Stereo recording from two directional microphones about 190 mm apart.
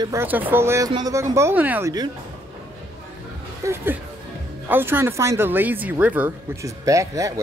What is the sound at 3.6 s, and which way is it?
Music, 15° right (ahead or behind).